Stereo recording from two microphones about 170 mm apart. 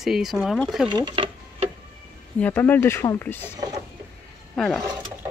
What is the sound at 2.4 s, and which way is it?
Speech, 10° left (ahead or behind).